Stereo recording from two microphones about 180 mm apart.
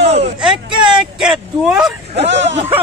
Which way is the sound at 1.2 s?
5° right (ahead or behind).